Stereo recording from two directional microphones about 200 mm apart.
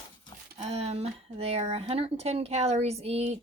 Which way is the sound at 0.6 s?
30° right (ahead or behind).